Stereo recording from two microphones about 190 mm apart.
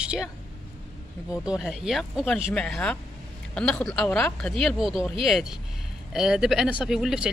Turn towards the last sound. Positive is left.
turn(degrees=-5)  # may be behind; listen again after turning